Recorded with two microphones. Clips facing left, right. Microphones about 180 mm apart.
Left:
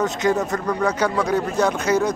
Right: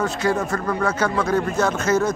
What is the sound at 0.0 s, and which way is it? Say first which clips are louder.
Speech: left 1 dB; 20° left (ahead or behind).